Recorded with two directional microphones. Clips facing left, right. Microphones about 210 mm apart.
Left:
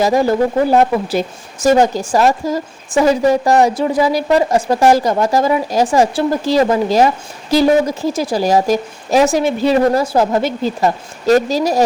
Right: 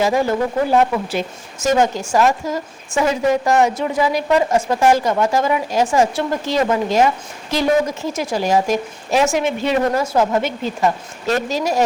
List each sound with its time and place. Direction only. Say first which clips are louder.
0.0 s a woman's voice: left 4 dB; 35° left (ahead or behind)